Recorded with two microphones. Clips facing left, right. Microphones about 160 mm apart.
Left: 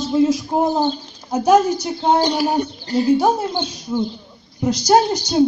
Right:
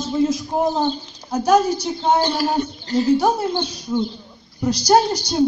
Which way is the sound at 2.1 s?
15° left (ahead or behind).